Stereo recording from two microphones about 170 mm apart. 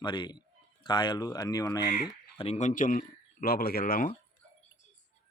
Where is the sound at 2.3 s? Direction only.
40° left (ahead or behind); by 4.1 s 55° left (ahead or behind).